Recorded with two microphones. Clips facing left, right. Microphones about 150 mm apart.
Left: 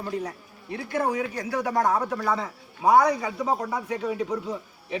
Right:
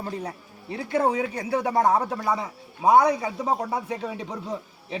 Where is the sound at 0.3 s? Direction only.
25° right (ahead or behind).